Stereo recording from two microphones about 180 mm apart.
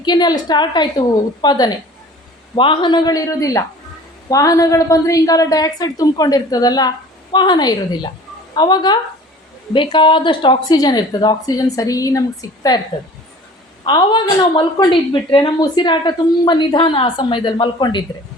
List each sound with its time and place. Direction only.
0.0 s a woman's voice: 25° left (ahead or behind)
13.8 s a woman's voice: 25° left (ahead or behind)